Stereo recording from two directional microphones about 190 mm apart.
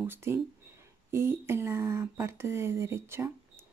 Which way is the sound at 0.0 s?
10° right (ahead or behind).